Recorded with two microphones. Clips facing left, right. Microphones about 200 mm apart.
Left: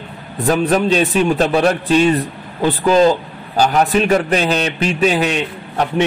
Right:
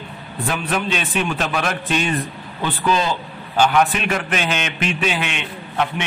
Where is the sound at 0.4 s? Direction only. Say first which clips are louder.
Left 9 dB; 40° left (ahead or behind).